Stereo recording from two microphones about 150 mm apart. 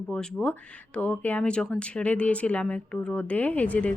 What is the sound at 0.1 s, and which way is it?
Speech, 5° left (ahead or behind).